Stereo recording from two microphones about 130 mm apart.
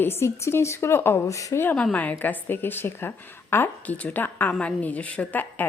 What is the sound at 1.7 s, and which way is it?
A woman's voice, 10° left (ahead or behind).